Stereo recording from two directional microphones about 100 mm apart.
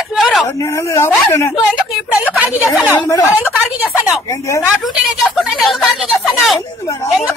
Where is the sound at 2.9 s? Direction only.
35° left (ahead or behind).